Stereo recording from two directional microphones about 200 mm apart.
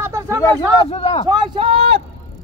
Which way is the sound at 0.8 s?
30° left (ahead or behind).